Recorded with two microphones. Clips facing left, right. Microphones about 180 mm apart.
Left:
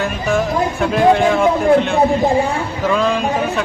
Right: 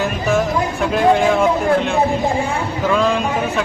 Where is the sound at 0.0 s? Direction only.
Centre (ahead or behind).